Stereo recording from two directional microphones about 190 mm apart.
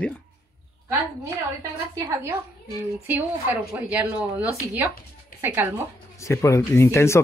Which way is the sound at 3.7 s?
5° right (ahead or behind).